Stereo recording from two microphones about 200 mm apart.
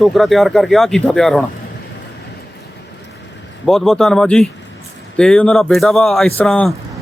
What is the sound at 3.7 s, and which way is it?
Speech, centre (ahead or behind).